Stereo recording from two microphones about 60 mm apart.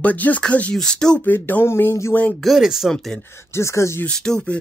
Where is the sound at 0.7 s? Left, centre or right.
Centre.